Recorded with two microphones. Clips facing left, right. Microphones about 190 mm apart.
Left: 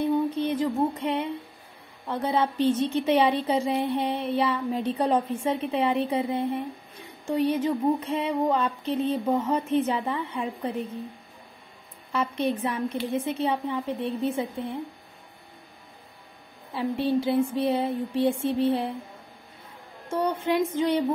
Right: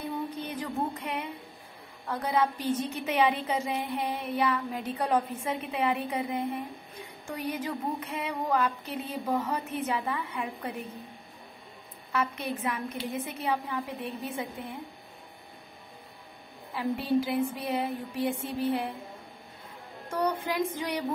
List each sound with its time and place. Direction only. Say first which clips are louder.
0.4 s music: left 8 dB; 25° left (ahead or behind)
2.0 s a woman's voice: left 2 dB; 25° left (ahead or behind)
12.1 s a woman's voice: left 5 dB; 30° left (ahead or behind)
16.7 s a woman's voice: left 2 dB; 30° left (ahead or behind)
20.1 s a woman's voice: left 4 dB; 25° left (ahead or behind)